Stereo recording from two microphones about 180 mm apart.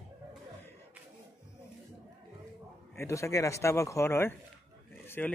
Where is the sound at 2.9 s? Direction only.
15° left (ahead or behind).